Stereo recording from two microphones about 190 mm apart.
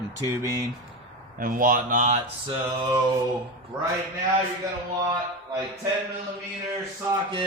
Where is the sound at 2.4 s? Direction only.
15° right (ahead or behind).